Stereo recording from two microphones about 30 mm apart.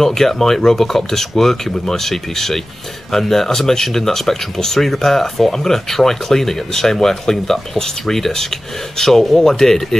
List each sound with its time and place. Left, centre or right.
0.0 s speech: centre
9.4 s speech: centre